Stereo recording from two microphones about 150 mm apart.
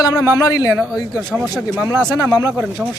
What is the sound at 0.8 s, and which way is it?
Speech, 5° right (ahead or behind).